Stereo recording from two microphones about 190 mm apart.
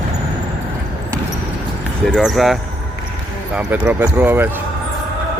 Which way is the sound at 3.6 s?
5° right (ahead or behind).